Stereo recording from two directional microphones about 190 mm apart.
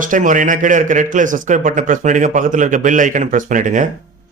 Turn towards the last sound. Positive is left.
turn(degrees=-40)  # may be behind; listen again after turning